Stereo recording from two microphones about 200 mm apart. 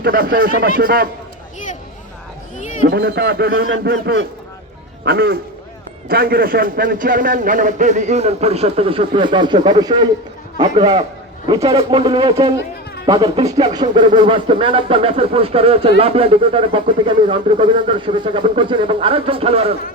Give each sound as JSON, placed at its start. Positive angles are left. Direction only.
{"t": 0.0, "sound": "a man's voice", "side_deg": -45}
{"t": 2.9, "sound": "a man's voice", "side_deg": -50}